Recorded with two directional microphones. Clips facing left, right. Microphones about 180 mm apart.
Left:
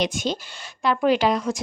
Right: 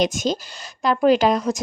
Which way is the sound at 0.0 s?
45° right (ahead or behind).